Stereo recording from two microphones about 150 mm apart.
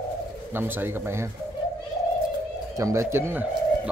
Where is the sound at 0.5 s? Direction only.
15° right (ahead or behind).